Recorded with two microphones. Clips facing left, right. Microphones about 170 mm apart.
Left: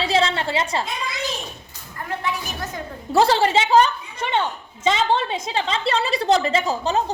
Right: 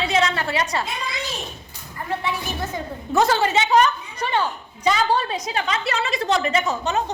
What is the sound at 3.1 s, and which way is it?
A woman's voice, 30° left (ahead or behind).